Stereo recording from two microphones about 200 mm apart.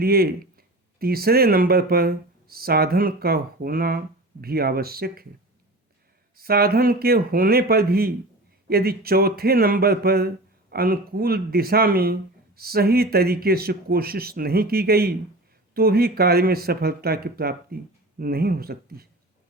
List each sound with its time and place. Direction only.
0.0 s speech: 50° right (ahead or behind)
6.3 s speech: 50° right (ahead or behind)